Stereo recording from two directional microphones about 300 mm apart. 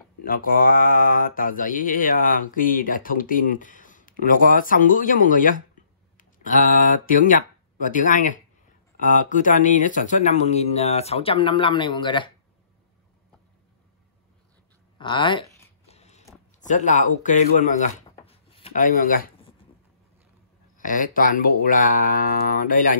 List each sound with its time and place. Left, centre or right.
0.2 s mantra: left
6.1 s speech: left
9.0 s mantra: left
15.0 s a sound: centre
16.6 s mantra: left
18.1 s rub: centre
20.7 s mantra: left